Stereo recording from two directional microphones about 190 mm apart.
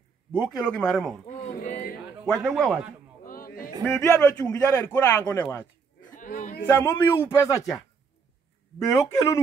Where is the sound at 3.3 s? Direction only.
50° left (ahead or behind).